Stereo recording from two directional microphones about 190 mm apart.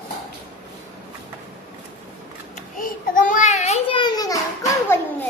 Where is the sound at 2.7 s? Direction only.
45° left (ahead or behind); by 5.2 s 15° left (ahead or behind).